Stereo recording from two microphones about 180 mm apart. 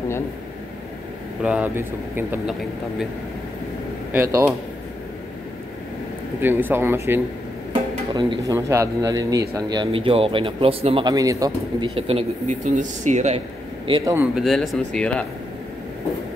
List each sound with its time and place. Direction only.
1.4 s speech: 5° right (ahead or behind)
4.1 s speech: 15° right (ahead or behind)
6.4 s speech: 10° right (ahead or behind)
8.1 s speech: 25° right (ahead or behind); by 13.4 s 40° right (ahead or behind)
14.0 s speech: 10° right (ahead or behind); by 15.2 s 5° left (ahead or behind)